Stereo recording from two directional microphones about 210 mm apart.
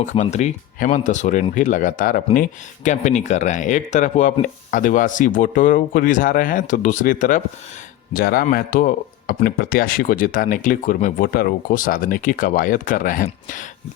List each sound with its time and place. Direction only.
0.0 s speech: 35° left (ahead or behind)